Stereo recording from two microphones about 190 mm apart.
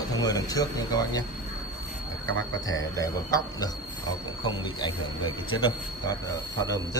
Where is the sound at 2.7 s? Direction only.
20° left (ahead or behind).